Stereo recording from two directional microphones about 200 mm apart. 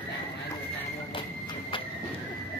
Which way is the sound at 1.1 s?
25° left (ahead or behind).